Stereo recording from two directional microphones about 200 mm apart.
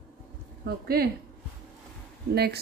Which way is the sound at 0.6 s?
50° right (ahead or behind).